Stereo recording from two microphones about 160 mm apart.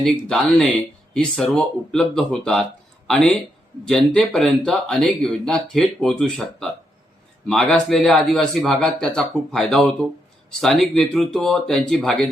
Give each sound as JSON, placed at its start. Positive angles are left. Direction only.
{"t": 1.1, "sound": "speech", "side_deg": 5}